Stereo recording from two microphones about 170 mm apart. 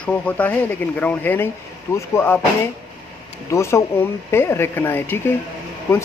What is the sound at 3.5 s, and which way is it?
Speech, 15° left (ahead or behind).